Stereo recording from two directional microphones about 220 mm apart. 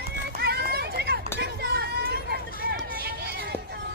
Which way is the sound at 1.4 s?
45° right (ahead or behind).